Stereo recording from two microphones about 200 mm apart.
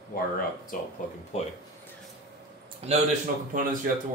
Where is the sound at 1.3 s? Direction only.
35° left (ahead or behind).